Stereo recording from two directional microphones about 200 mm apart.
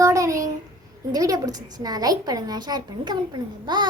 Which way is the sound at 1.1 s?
20° right (ahead or behind).